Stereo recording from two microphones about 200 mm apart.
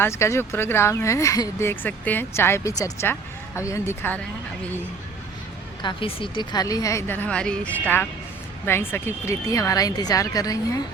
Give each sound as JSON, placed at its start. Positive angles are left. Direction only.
{"t": 0.0, "sound": "speech", "side_deg": 15}
{"t": 5.8, "sound": "speech", "side_deg": 25}